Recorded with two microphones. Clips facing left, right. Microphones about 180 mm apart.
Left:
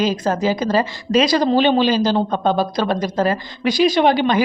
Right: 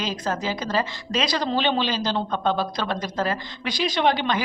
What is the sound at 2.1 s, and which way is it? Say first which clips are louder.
Speech: left 6 dB; 40° left (ahead or behind).